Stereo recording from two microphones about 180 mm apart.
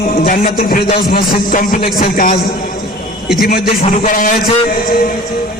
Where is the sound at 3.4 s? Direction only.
55° left (ahead or behind).